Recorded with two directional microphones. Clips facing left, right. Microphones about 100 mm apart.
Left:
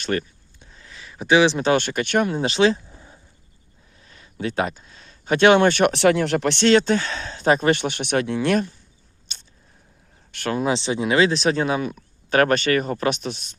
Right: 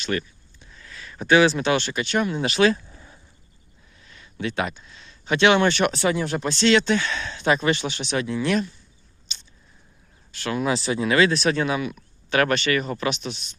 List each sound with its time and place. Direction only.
0.0 s a sound: 45° left (ahead or behind)
0.9 s a sound: 15° left (ahead or behind)
1.5 s speech: 40° left (ahead or behind)
1.8 s speech: 55° left (ahead or behind)
2.4 s speech: 30° left (ahead or behind)
4.0 s speech: 35° left (ahead or behind)
5.9 s speech: 75° left (ahead or behind)
6.7 s speech: 45° left (ahead or behind)
9.3 s biting: 50° left (ahead or behind)
10.3 s speech: 50° left (ahead or behind)
10.6 s speech: 30° left (ahead or behind); by 13.6 s 50° left (ahead or behind)